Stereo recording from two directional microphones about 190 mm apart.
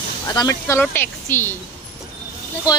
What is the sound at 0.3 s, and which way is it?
Speech, 15° left (ahead or behind).